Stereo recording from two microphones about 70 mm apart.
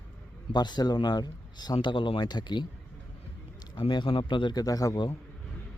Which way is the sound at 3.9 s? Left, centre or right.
Left.